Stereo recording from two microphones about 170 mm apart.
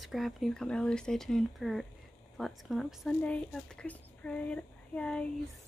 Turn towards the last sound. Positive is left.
turn(degrees=5)  # may be behind; listen again after turning